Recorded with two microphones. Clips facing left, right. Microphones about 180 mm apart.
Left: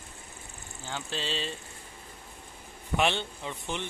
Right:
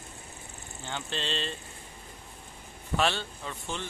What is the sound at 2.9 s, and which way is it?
Speech, 20° left (ahead or behind).